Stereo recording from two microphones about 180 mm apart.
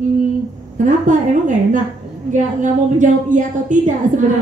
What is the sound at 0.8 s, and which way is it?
A woman's voice, 45° right (ahead or behind).